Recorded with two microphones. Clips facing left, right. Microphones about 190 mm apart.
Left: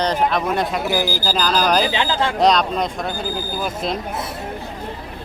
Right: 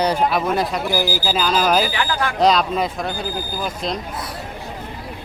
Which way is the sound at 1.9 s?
25° left (ahead or behind).